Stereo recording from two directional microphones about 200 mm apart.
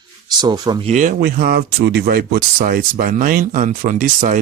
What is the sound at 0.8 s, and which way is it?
Speech, 40° right (ahead or behind).